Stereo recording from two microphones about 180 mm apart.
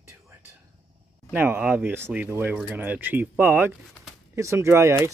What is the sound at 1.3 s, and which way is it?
Speech, 10° right (ahead or behind).